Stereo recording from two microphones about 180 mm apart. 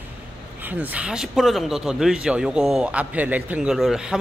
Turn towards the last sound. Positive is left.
turn(degrees=-5)  # may be behind; listen again after turning